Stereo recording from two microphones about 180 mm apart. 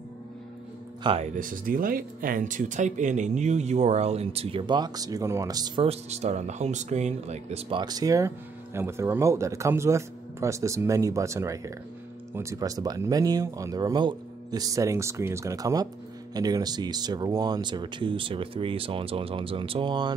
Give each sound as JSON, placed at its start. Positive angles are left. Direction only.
{"t": 1.0, "sound": "speech", "side_deg": -30}
{"t": 1.3, "sound": "speech", "side_deg": -50}
{"t": 5.9, "sound": "speech", "side_deg": -40}
{"t": 7.8, "sound": "speech", "side_deg": -20}